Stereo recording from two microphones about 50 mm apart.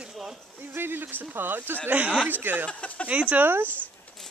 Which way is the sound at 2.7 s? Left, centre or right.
Left.